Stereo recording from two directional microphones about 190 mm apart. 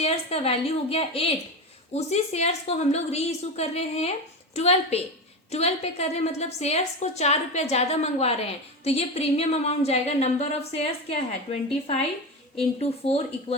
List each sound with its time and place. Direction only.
0.0 s a woman's voice: 30° left (ahead or behind)
12.8 s a woman's voice: 30° left (ahead or behind)